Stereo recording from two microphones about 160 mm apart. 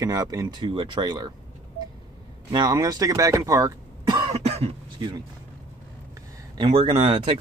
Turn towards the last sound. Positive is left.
turn(degrees=-30)  # may be behind; listen again after turning